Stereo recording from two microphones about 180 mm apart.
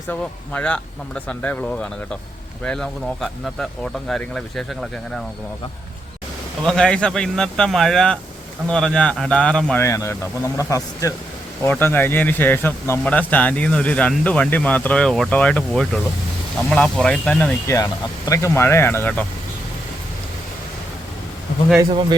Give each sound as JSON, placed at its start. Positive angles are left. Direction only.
{"t": 0.1, "sound": "speech", "side_deg": 5}
{"t": 6.6, "sound": "speech", "side_deg": 5}
{"t": 9.8, "sound": "speech", "side_deg": 15}